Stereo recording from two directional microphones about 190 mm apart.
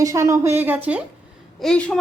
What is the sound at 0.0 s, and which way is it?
A woman's voice, 15° right (ahead or behind).